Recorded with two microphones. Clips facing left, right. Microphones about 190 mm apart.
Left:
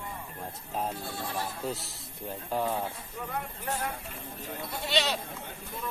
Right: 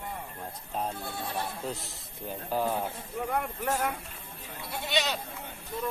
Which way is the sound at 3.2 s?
55° right (ahead or behind).